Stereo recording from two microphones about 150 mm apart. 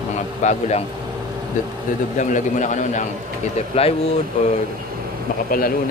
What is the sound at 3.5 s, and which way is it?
Speech, 40° left (ahead or behind).